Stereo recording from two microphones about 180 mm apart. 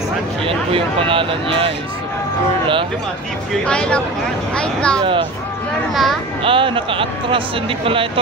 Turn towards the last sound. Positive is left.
turn(degrees=-30)  # may be behind; listen again after turning